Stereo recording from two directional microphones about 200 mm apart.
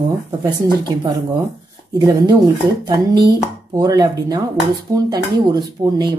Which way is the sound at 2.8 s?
20° right (ahead or behind).